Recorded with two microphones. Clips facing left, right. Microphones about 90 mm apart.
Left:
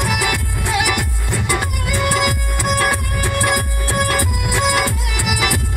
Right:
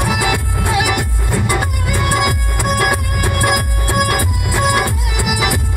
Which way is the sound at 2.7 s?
20° right (ahead or behind).